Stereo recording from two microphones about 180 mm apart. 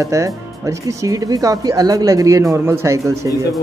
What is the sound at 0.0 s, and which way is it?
Speech, 15° right (ahead or behind).